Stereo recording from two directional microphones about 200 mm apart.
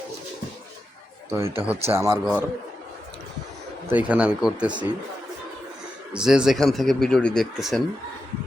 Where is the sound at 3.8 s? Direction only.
10° right (ahead or behind).